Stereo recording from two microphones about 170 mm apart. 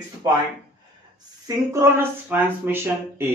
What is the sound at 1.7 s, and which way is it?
A man's voice, 15° right (ahead or behind).